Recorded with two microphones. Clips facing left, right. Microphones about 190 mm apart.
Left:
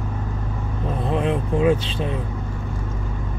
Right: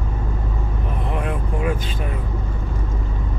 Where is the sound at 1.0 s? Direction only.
25° left (ahead or behind).